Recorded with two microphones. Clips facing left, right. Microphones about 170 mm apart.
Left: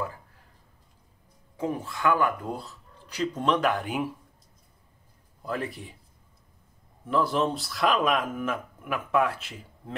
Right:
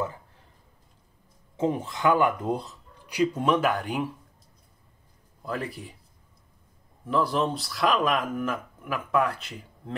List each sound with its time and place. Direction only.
1.6 s speech: 20° right (ahead or behind); by 4.1 s centre (ahead or behind)
5.4 s speech: centre (ahead or behind)
7.1 s speech: centre (ahead or behind)